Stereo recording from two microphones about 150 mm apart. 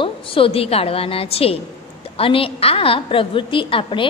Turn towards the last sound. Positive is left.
turn(degrees=35)  # may be behind; listen again after turning